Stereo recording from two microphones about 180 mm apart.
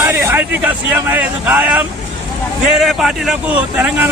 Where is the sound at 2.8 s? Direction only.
Centre (ahead or behind).